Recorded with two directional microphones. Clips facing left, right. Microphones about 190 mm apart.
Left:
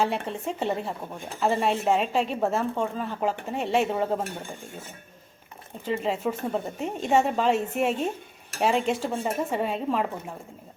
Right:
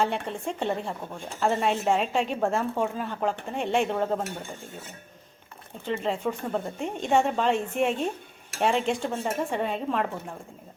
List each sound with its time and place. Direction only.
0.0 s a woman's voice: centre (ahead or behind)
5.8 s a woman's voice: 5° left (ahead or behind)